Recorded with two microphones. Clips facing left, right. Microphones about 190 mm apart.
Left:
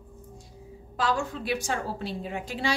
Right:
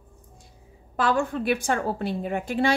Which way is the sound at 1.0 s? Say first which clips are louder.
Right 4 dB; 55° right (ahead or behind).